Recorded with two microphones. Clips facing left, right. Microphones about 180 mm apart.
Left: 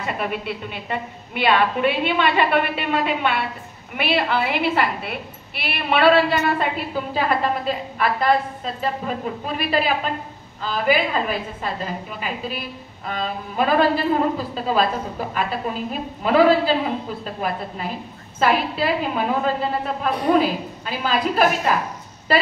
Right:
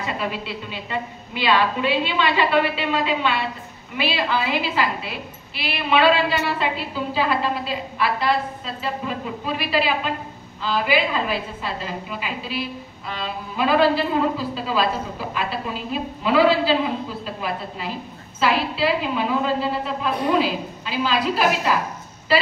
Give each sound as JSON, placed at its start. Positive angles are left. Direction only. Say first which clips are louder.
{"t": 0.0, "sound": "a woman's voice", "louder": "left 1 dB", "side_deg": 55}